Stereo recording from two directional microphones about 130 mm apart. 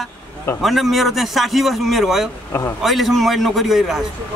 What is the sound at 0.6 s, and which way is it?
Speech, centre (ahead or behind).